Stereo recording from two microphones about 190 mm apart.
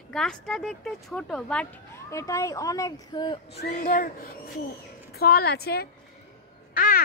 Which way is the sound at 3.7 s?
45° left (ahead or behind).